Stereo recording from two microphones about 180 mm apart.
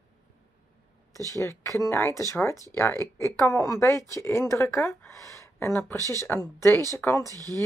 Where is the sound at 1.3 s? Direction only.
15° left (ahead or behind).